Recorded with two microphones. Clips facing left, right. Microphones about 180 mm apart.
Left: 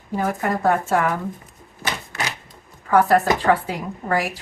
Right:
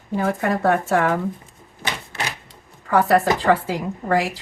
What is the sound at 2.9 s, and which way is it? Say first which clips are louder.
A woman's voice: even; 80° right.